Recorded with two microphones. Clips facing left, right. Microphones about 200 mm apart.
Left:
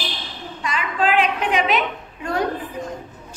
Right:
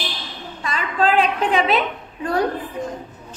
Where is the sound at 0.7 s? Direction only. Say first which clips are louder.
Right 1 dB; 35° right (ahead or behind).